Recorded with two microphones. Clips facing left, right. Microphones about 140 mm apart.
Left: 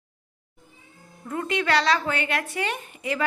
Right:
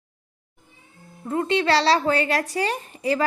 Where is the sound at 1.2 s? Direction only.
30° right (ahead or behind).